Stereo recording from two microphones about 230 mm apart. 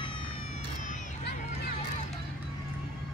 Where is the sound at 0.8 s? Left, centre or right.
Left.